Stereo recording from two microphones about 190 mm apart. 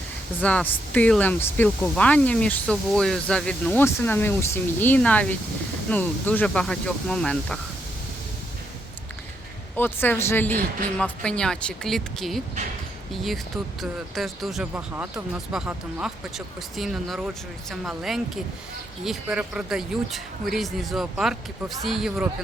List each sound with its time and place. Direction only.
0.4 s speech: 10° left (ahead or behind)
9.7 s speech: 10° left (ahead or behind)
14.2 s speech: centre (ahead or behind)